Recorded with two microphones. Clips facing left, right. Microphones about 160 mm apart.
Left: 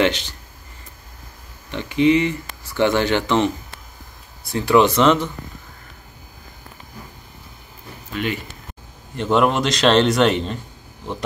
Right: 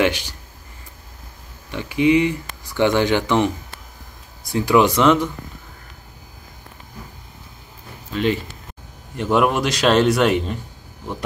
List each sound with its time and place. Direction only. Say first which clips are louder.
0.0 s speech: even; 10° right (ahead or behind)
1.7 s speech: even; 10° right (ahead or behind)
8.1 s speech: right 4 dB; 30° right (ahead or behind)
9.1 s speech: even; 10° right (ahead or behind)